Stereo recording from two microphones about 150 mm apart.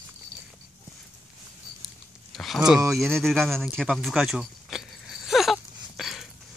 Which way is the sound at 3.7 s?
Centre (ahead or behind).